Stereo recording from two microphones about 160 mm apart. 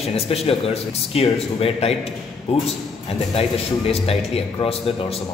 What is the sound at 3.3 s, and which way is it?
A man's voice, 40° left (ahead or behind).